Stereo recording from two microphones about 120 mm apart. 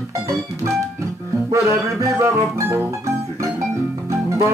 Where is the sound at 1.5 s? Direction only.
25° right (ahead or behind).